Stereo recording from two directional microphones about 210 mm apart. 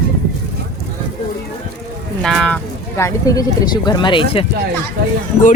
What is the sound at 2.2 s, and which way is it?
Speech, 5° left (ahead or behind).